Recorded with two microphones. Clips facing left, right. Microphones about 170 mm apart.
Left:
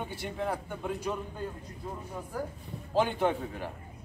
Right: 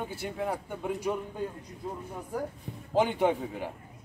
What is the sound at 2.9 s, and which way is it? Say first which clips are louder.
Speech: right 2 dB; 15° right (ahead or behind).